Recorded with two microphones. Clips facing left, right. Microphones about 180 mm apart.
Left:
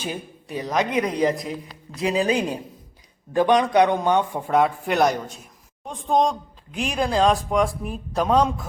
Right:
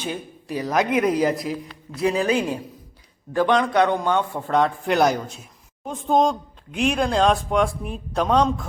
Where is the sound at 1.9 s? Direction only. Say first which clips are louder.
Right 1 dB; 15° left (ahead or behind).